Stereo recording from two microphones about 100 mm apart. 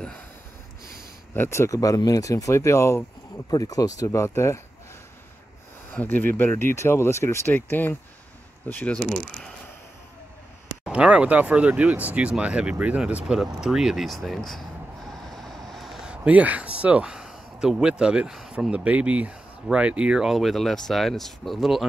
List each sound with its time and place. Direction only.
1.3 s speech: 25° left (ahead or behind)
5.9 s speech: 20° left (ahead or behind)
10.9 s speech: 10° right (ahead or behind)